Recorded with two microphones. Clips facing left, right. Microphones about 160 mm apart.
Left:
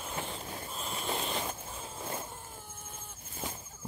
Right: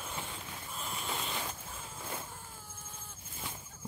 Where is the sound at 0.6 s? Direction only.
20° left (ahead or behind).